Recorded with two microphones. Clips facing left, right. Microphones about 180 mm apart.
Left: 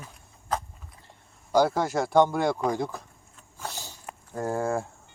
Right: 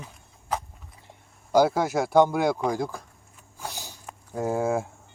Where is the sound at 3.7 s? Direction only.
15° right (ahead or behind).